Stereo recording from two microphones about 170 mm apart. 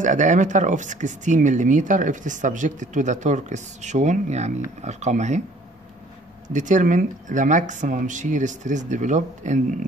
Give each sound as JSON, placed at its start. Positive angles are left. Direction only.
{"t": 0.0, "sound": "speech", "side_deg": -45}
{"t": 6.5, "sound": "speech", "side_deg": -45}